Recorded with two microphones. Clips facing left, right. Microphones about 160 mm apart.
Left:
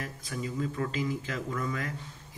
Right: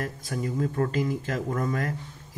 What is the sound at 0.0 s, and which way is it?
Speech, 50° right (ahead or behind).